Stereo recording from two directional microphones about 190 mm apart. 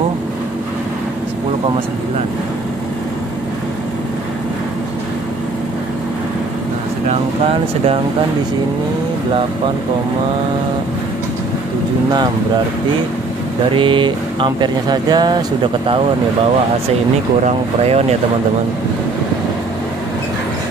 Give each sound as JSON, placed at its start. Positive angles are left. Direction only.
{"t": 13.7, "sound": "speech", "side_deg": -25}
{"t": 17.5, "sound": "speech", "side_deg": -35}